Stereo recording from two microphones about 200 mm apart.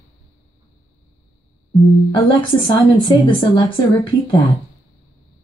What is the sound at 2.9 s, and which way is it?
Speech, 25° left (ahead or behind).